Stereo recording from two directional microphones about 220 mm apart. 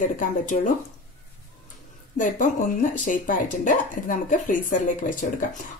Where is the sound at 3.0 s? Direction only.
35° left (ahead or behind).